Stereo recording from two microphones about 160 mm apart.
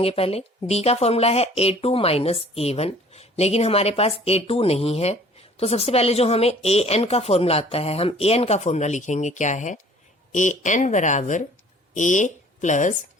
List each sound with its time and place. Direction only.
0.0 s speech: 35° left (ahead or behind)